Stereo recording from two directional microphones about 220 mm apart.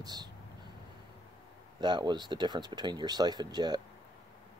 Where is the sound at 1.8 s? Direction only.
20° right (ahead or behind).